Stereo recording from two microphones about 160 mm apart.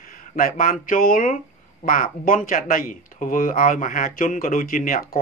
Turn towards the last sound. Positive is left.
turn(degrees=60)  # may be behind; listen again after turning